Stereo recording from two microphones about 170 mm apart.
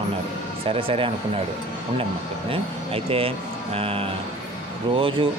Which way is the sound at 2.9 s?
35° right (ahead or behind).